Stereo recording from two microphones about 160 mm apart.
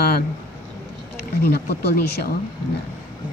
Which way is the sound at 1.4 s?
70° left (ahead or behind).